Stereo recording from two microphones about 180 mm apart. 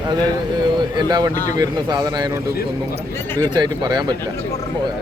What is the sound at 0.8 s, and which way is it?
Speech, 25° right (ahead or behind).